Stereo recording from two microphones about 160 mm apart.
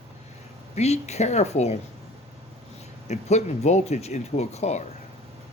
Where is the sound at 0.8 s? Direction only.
45° left (ahead or behind).